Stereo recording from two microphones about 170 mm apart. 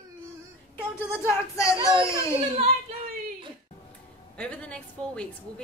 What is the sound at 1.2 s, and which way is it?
Speech, 20° left (ahead or behind).